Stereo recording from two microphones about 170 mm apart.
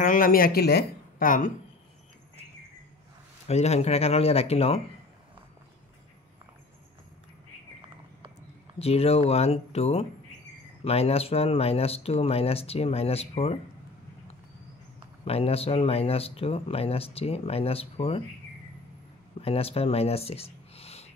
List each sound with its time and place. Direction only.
0.0 s a woman's voice: 55° left (ahead or behind)
3.4 s speech: 40° left (ahead or behind)
8.7 s speech: 35° left (ahead or behind)
15.2 s speech: 35° left (ahead or behind)
19.4 s speech: 35° left (ahead or behind)